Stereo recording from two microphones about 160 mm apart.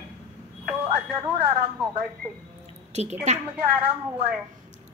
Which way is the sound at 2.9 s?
45° right (ahead or behind).